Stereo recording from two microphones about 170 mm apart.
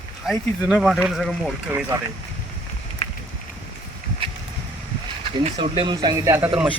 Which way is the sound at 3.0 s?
35° left (ahead or behind).